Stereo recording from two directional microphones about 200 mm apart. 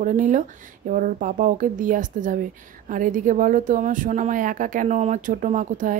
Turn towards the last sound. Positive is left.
turn(degrees=-40)  # may be behind; listen again after turning